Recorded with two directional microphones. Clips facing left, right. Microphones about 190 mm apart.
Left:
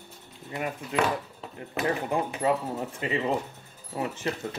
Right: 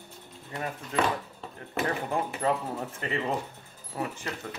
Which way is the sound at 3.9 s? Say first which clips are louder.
Left 2 dB; 25° left (ahead or behind).